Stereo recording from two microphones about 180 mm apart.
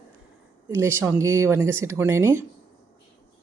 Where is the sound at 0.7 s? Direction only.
15° right (ahead or behind).